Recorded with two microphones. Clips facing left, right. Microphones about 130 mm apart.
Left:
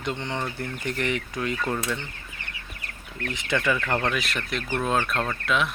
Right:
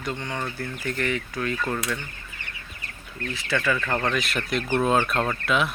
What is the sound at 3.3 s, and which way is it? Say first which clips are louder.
Speech: even; 20° left (ahead or behind).